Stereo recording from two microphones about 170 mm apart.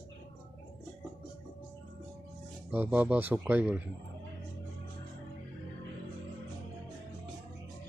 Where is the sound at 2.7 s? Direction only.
10° right (ahead or behind).